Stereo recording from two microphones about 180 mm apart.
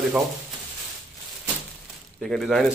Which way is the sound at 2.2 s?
Centre (ahead or behind).